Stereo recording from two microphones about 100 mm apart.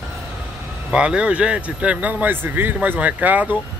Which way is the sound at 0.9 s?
10° right (ahead or behind).